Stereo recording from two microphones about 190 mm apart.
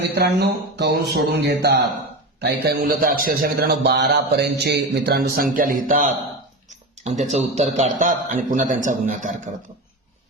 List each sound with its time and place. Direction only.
0.0 s a man's voice: 60° right (ahead or behind); by 9.3 s 40° right (ahead or behind)